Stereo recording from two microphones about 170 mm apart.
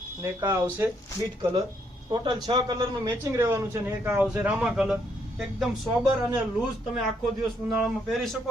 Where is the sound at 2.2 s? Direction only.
25° right (ahead or behind); by 6.1 s 5° right (ahead or behind).